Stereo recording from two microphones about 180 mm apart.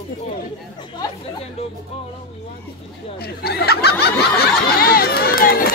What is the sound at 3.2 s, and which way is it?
Speech, 60° left (ahead or behind).